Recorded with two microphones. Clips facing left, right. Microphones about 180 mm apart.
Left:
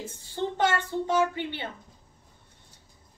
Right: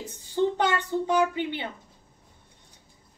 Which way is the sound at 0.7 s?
15° right (ahead or behind).